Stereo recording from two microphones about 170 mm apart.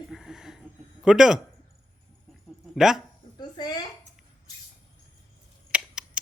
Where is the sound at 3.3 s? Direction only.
25° left (ahead or behind).